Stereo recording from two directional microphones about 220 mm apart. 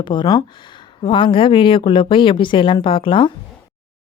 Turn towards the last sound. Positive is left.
turn(degrees=20)  # may be behind; listen again after turning